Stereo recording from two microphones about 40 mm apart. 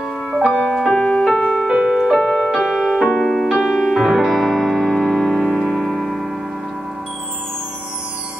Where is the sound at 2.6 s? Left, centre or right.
Centre.